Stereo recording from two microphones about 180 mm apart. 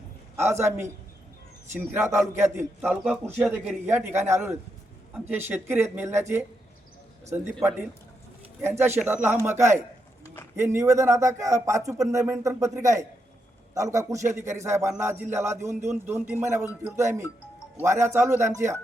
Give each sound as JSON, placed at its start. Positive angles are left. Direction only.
{"t": 0.3, "sound": "a man's voice", "side_deg": -15}
{"t": 1.9, "sound": "a man's voice", "side_deg": -15}
{"t": 9.0, "sound": "a man's voice", "side_deg": -10}